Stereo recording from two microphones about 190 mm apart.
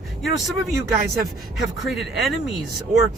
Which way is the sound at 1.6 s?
Centre (ahead or behind).